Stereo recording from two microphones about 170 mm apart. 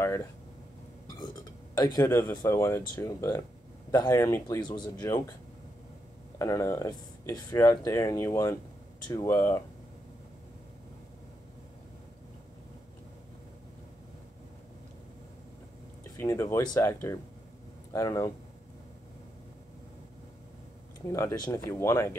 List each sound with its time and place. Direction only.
0.0 s speech: 15° left (ahead or behind)
1.0 s burping: 20° left (ahead or behind)
2.0 s speech: 20° left (ahead or behind)
6.3 s speech: 20° left (ahead or behind)
16.2 s speech: 15° left (ahead or behind)
21.1 s speech: 20° left (ahead or behind)